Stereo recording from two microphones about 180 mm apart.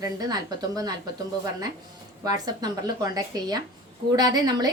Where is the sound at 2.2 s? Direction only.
20° right (ahead or behind).